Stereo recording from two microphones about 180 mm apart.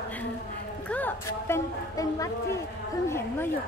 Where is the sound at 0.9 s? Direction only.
10° left (ahead or behind).